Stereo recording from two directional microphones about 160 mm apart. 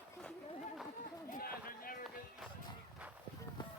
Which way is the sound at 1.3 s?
65° left (ahead or behind).